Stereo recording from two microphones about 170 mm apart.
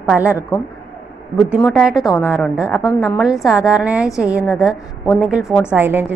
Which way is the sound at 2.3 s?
Centre (ahead or behind).